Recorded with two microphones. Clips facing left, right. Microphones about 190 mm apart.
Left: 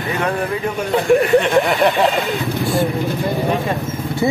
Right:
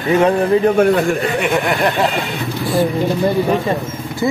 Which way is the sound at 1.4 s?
5° right (ahead or behind).